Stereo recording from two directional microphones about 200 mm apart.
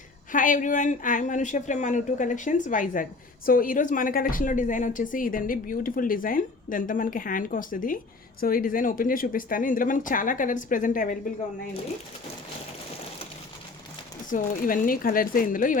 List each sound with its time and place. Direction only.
0.3 s speech: 40° left (ahead or behind)
14.3 s speech: 40° left (ahead or behind)